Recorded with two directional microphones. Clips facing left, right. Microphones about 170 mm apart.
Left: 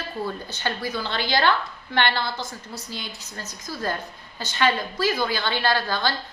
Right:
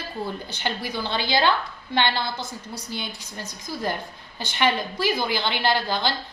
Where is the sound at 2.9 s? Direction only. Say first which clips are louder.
Right 5 dB; 20° right (ahead or behind).